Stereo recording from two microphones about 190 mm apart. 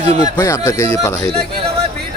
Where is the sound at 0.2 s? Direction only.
20° left (ahead or behind).